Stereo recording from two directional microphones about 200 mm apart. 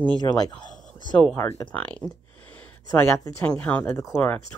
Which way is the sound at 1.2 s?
10° left (ahead or behind).